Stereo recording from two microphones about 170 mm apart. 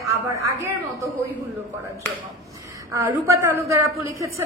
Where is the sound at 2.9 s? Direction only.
15° right (ahead or behind).